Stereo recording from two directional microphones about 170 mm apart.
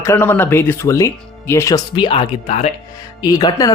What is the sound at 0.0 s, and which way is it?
Speech, 15° left (ahead or behind).